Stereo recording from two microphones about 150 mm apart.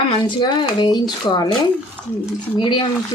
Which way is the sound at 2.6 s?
35° left (ahead or behind).